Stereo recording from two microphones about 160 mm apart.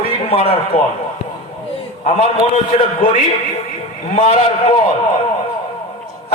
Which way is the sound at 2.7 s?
40° left (ahead or behind).